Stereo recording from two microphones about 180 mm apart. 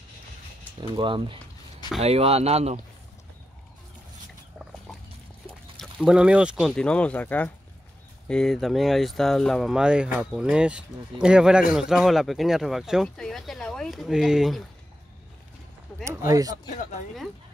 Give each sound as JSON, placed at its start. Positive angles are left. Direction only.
{"t": 0.9, "sound": "speech", "side_deg": -25}
{"t": 5.8, "sound": "speech", "side_deg": 0}
{"t": 16.0, "sound": "speech", "side_deg": -15}